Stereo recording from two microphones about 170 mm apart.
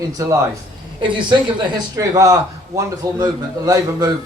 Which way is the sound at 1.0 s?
30° right (ahead or behind).